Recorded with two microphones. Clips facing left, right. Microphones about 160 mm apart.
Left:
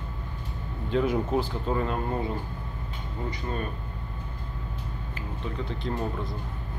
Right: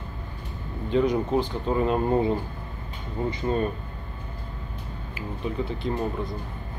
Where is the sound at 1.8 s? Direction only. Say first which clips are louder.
Right 10 dB; 20° right (ahead or behind).